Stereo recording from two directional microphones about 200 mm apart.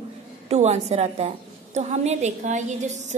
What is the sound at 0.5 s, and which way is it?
A woman's voice, 35° right (ahead or behind).